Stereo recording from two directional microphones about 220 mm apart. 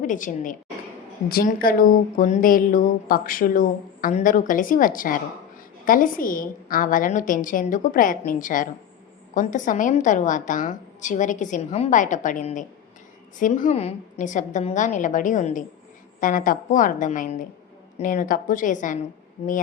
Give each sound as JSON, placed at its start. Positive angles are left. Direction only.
{"t": 0.0, "sound": "a woman's voice", "side_deg": 35}